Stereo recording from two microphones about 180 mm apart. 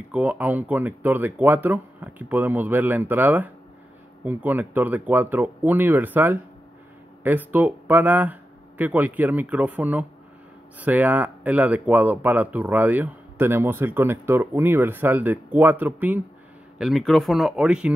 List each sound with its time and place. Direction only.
0.1 s speech: 10° right (ahead or behind)